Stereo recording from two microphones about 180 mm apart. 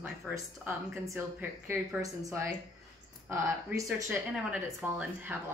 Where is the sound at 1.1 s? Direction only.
15° right (ahead or behind).